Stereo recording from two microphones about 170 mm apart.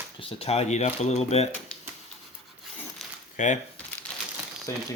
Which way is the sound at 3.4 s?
45° left (ahead or behind).